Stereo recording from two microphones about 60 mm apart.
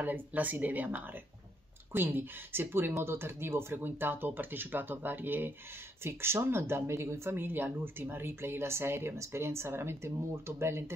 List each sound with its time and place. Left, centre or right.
0.0 s speech: right